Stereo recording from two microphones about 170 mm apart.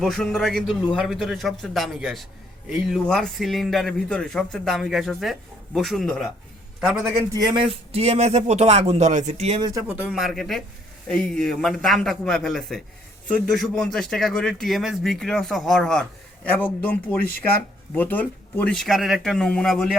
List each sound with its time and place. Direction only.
0.0 s a man's voice: centre (ahead or behind)
7.3 s a man's voice: 30° right (ahead or behind)
9.6 s speech: 25° right (ahead or behind)
9.8 s a man's voice: 5° right (ahead or behind)